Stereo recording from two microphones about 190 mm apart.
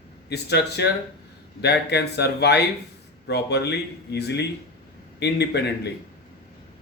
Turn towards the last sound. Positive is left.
turn(degrees=60)  # may be behind; listen again after turning